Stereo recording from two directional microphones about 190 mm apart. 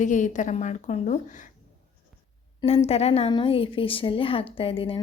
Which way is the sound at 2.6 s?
30° left (ahead or behind).